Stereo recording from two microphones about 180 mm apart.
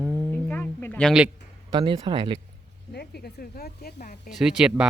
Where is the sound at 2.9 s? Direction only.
60° left (ahead or behind).